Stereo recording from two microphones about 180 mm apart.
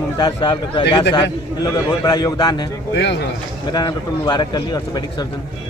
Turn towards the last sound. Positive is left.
turn(degrees=25)  # may be behind; listen again after turning